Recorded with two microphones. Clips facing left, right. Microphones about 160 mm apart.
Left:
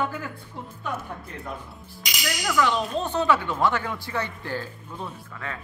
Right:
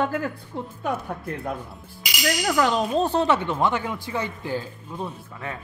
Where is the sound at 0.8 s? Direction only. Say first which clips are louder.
Right 5 dB; 60° right (ahead or behind).